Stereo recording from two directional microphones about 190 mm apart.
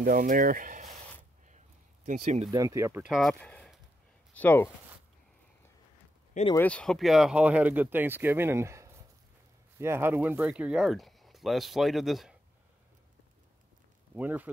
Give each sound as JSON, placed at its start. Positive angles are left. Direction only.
{"t": 0.0, "sound": "speech", "side_deg": -45}
{"t": 2.0, "sound": "speech", "side_deg": -40}
{"t": 2.5, "sound": "speech", "side_deg": -15}
{"t": 6.5, "sound": "speech", "side_deg": 10}
{"t": 14.1, "sound": "speech", "side_deg": -10}